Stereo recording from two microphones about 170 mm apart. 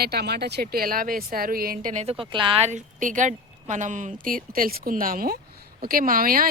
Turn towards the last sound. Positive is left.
turn(degrees=-55)  # may be behind; listen again after turning